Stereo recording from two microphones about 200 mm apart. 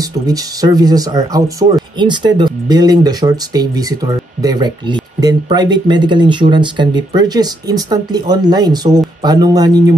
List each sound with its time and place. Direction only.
0.0 s speech: 20° right (ahead or behind)